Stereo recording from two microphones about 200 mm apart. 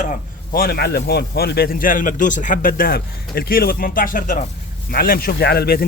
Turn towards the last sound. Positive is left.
turn(degrees=50)  # may be behind; listen again after turning